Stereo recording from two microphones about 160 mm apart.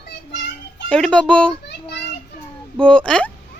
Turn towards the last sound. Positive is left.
turn(degrees=5)  # may be behind; listen again after turning